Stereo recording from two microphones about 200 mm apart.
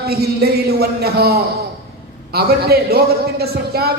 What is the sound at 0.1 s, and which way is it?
A man's voice, 50° right (ahead or behind).